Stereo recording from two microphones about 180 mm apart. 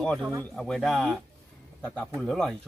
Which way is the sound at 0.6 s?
5° left (ahead or behind).